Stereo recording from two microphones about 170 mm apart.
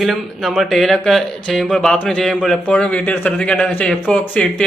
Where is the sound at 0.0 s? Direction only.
Centre (ahead or behind).